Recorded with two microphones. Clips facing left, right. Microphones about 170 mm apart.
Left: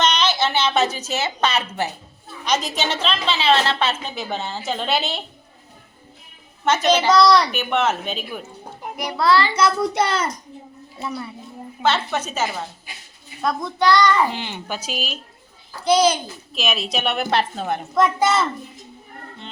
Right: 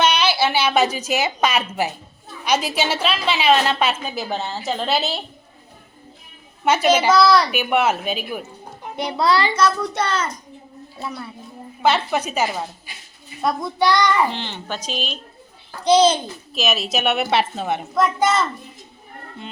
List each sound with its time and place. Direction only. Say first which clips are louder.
0.0 s a woman's voice: right 2 dB; 10° right (ahead or behind)
6.7 s a woman's voice: right 1 dB; 10° right (ahead or behind)
9.0 s a child's voice: even; 20° right (ahead or behind)
11.0 s a woman's voice: left 2 dB; 5° left (ahead or behind)
11.8 s a woman's voice: right 2 dB; 10° right (ahead or behind)
14.3 s speech: even; 10° left (ahead or behind)
15.8 s a child's voice: right 2 dB; 25° right (ahead or behind)
16.6 s a woman's voice: right 2 dB; centre (ahead or behind)